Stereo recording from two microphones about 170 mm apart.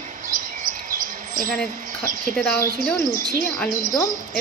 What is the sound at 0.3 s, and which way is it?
Bird, 50° right (ahead or behind).